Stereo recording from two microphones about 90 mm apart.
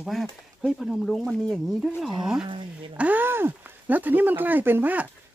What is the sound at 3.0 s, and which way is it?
Speech, 20° right (ahead or behind).